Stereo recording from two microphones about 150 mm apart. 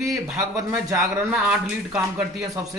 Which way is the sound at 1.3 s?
5° right (ahead or behind).